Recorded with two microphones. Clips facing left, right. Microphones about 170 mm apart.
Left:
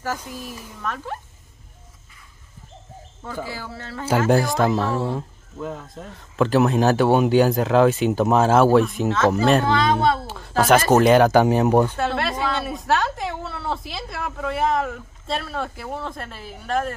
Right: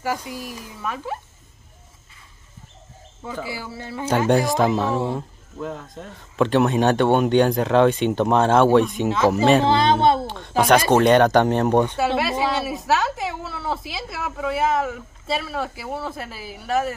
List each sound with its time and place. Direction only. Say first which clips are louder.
0.0 s speech: right 2 dB; 10° right (ahead or behind)
3.4 s speech: right 1 dB; 10° right (ahead or behind)
4.3 s a woman's voice: right 1 dB; centre (ahead or behind)
9.7 s speech: right 2 dB; 25° right (ahead or behind)
10.2 s a woman's voice: even; 5° left (ahead or behind)
12.0 s a woman's voice: right 2 dB; 5° right (ahead or behind)